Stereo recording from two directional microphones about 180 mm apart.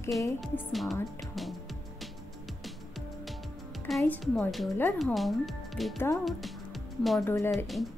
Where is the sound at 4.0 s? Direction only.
10° left (ahead or behind).